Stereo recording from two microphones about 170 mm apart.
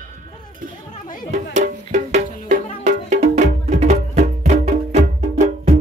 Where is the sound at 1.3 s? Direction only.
45° right (ahead or behind).